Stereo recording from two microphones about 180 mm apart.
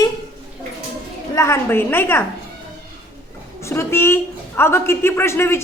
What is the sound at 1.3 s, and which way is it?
Speech, 15° left (ahead or behind).